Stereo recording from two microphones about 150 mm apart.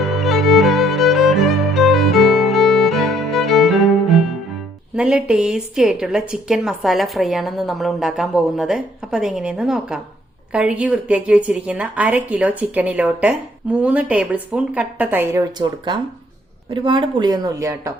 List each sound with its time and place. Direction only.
0.0 s music: centre (ahead or behind)
4.9 s a woman's voice: 5° right (ahead or behind)